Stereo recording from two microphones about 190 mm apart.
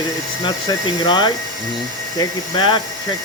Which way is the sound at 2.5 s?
25° left (ahead or behind).